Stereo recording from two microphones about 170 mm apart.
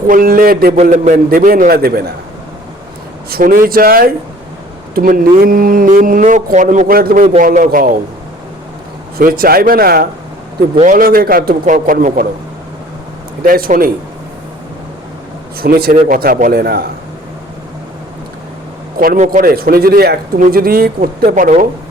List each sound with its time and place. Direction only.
0.1 s a man's voice: 55° right (ahead or behind)
0.8 s a man's voice: 45° right (ahead or behind); by 2.1 s 65° right (ahead or behind)
3.2 s a man's voice: 60° right (ahead or behind)
9.1 s a man's voice: 60° right (ahead or behind)
10.8 s a man's voice: 50° right (ahead or behind)
13.4 s a man's voice: 55° right (ahead or behind)
15.6 s a man's voice: 60° right (ahead or behind)
18.9 s a man's voice: 55° right (ahead or behind)